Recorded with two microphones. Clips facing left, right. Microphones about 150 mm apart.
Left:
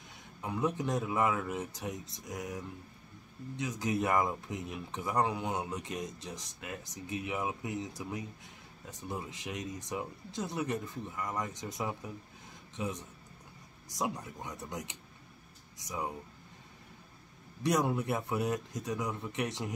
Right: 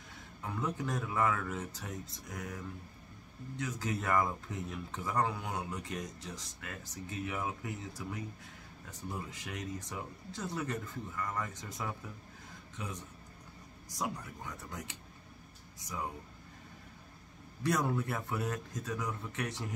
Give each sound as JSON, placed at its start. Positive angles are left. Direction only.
{"t": 0.4, "sound": "speech", "side_deg": 20}
{"t": 17.6, "sound": "speech", "side_deg": 20}